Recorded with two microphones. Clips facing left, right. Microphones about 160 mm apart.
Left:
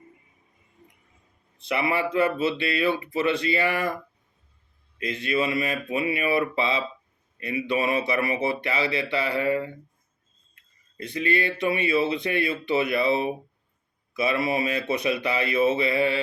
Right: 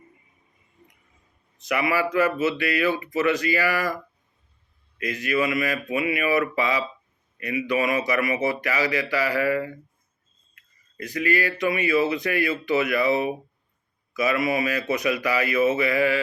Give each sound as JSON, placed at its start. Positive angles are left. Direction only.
{"t": 1.5, "sound": "speech", "side_deg": 30}
{"t": 4.9, "sound": "speech", "side_deg": 25}
{"t": 10.5, "sound": "a sound", "side_deg": 25}
{"t": 11.6, "sound": "speech", "side_deg": 30}